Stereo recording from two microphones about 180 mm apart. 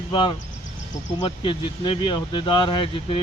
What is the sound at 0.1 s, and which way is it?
Speech, 25° left (ahead or behind).